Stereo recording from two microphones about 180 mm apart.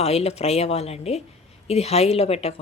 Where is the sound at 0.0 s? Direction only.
35° left (ahead or behind).